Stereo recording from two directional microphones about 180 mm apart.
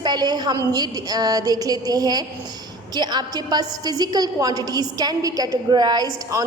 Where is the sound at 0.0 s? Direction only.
25° right (ahead or behind).